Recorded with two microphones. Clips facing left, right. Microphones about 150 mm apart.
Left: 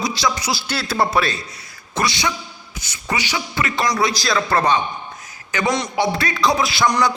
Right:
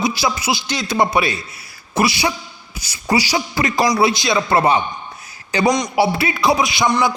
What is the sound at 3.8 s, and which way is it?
A man's voice, 25° right (ahead or behind).